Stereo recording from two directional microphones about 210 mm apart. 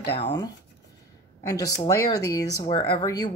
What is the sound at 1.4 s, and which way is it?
Speech, 15° left (ahead or behind).